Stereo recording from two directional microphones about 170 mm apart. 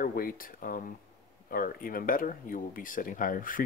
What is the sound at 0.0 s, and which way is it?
Speech, 55° left (ahead or behind).